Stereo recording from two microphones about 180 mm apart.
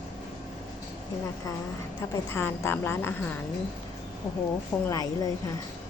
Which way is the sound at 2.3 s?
15° left (ahead or behind).